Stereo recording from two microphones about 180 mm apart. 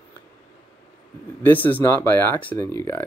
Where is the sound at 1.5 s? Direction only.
10° left (ahead or behind).